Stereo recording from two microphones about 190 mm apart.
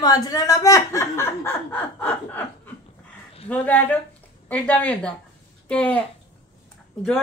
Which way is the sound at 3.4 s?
10° left (ahead or behind).